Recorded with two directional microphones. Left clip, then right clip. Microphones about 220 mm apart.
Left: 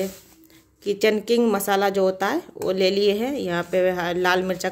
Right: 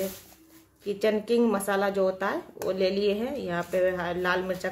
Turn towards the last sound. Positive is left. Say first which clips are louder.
# left 6 dB
turn(degrees=40)  # may be behind; listen again after turning